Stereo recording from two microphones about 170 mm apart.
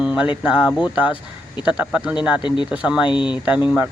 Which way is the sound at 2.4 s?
25° left (ahead or behind).